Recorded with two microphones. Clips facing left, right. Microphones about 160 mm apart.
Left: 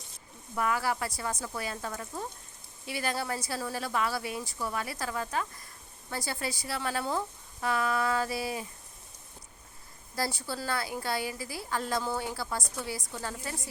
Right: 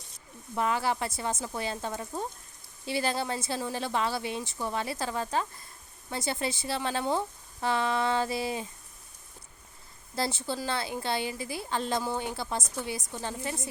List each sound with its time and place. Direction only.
0.5 s speech: 25° right (ahead or behind)
10.2 s speech: 25° right (ahead or behind)